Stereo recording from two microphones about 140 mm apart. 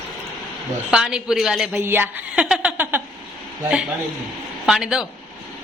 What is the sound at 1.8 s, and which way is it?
Speech, 15° right (ahead or behind).